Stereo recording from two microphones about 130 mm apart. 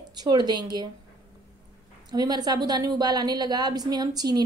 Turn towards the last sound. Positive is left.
turn(degrees=-30)  # may be behind; listen again after turning